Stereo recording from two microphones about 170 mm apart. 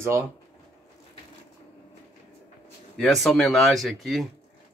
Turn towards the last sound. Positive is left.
turn(degrees=0)  # may be behind; listen again after turning